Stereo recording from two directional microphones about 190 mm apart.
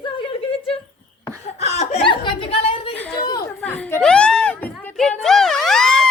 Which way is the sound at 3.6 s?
10° left (ahead or behind).